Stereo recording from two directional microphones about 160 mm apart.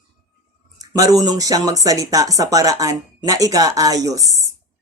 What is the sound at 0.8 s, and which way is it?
Speech, 20° right (ahead or behind).